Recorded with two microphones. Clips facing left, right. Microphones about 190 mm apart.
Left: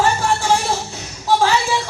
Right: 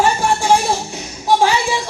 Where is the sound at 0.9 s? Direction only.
15° right (ahead or behind).